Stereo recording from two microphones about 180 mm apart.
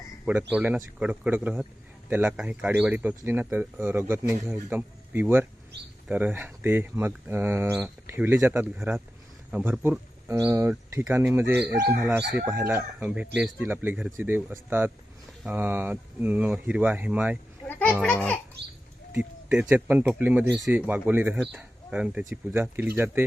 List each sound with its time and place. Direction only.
0.5 s speech: 10° right (ahead or behind)
17.7 s music: 10° left (ahead or behind)
18.0 s a child's voice: 10° left (ahead or behind)
19.5 s speech: 5° right (ahead or behind)